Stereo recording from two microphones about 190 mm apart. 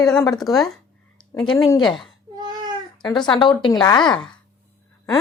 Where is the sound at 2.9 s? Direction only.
25° left (ahead or behind).